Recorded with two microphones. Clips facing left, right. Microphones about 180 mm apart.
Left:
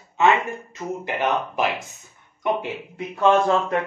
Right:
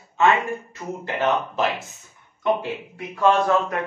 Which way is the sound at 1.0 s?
15° left (ahead or behind).